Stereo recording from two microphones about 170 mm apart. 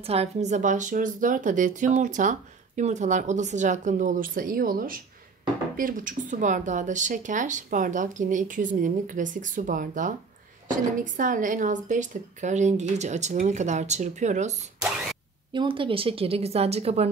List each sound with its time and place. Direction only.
0.0 s speech: 35° right (ahead or behind)
15.5 s speech: 30° right (ahead or behind)